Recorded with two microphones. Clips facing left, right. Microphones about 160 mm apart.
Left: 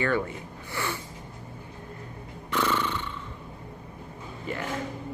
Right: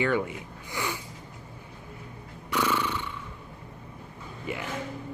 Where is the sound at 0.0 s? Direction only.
15° right (ahead or behind).